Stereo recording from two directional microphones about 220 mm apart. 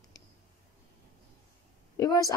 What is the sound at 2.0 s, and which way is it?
Speech, 15° left (ahead or behind).